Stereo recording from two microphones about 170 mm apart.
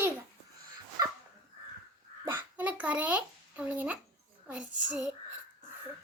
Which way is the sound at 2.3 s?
10° right (ahead or behind).